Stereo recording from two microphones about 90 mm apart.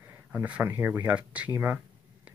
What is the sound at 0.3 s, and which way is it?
Speech, 20° right (ahead or behind).